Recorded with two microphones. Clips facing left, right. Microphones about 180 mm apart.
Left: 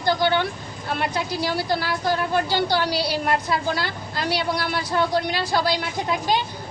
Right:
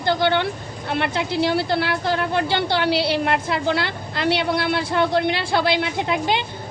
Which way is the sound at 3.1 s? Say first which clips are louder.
Right 1 dB; 60° right (ahead or behind).